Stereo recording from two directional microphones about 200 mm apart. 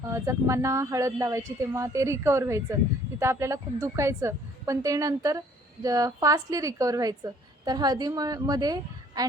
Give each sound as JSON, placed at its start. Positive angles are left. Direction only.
{"t": 0.1, "sound": "a woman's voice", "side_deg": -15}